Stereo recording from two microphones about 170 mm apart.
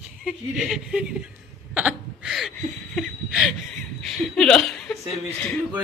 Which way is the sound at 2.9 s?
Centre (ahead or behind).